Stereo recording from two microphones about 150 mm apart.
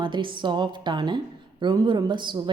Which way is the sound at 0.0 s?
30° right (ahead or behind).